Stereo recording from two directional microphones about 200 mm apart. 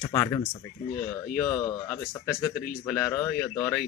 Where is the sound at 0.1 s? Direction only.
15° left (ahead or behind).